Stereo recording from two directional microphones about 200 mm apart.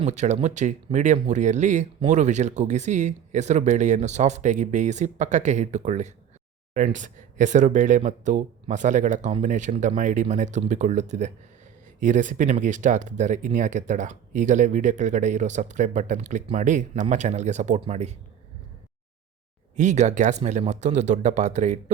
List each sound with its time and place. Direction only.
0.0 s speech: 35° right (ahead or behind)
19.7 s speech: 35° right (ahead or behind)